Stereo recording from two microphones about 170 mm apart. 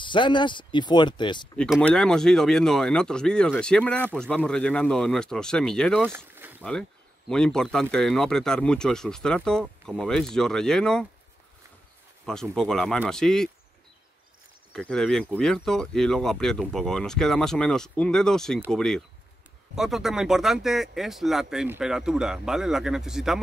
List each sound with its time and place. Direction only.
0.0 s speech: 30° left (ahead or behind)
1.6 s speech: 5° left (ahead or behind)
6.0 s a sound: 10° right (ahead or behind)
6.6 s speech: 5° left (ahead or behind)
12.3 s speech: 5° left (ahead or behind)
14.8 s speech: 5° left (ahead or behind)